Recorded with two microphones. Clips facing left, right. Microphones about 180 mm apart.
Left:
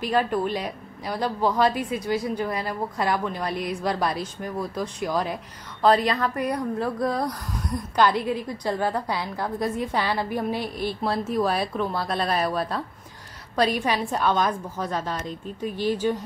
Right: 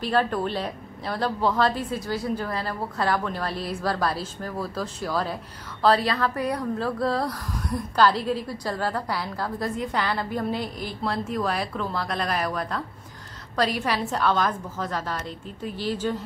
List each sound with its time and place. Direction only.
0.0 s a woman's voice: 10° left (ahead or behind)
6.2 s a woman's voice: centre (ahead or behind)
6.8 s a woman's voice: 15° left (ahead or behind)